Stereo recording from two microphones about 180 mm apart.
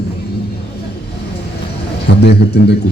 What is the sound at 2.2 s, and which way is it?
Speech, 70° left (ahead or behind).